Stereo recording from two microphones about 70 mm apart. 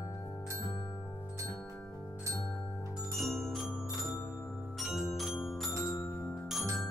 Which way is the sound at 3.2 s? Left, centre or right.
Centre.